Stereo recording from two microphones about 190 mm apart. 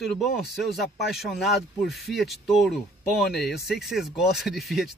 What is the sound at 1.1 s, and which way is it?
Speech, centre (ahead or behind).